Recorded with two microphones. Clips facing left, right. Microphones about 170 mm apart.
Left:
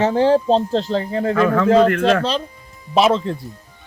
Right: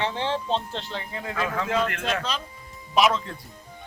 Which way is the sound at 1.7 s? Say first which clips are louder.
Left 15 dB; 40° left (ahead or behind).